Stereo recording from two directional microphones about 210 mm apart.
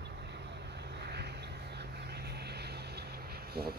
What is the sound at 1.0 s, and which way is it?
Vehicle, 50° right (ahead or behind).